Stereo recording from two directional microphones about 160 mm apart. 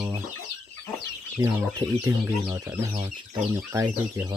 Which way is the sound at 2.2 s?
10° right (ahead or behind).